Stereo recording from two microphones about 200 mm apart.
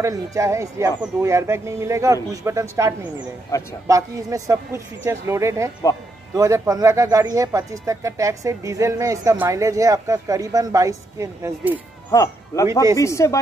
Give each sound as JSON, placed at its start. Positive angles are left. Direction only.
{"t": 0.0, "sound": "speech", "side_deg": -15}
{"t": 3.5, "sound": "speech", "side_deg": 15}
{"t": 3.8, "sound": "speech", "side_deg": -15}
{"t": 12.1, "sound": "speech", "side_deg": 15}